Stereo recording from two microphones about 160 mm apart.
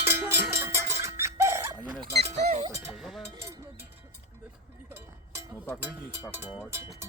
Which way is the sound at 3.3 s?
15° right (ahead or behind).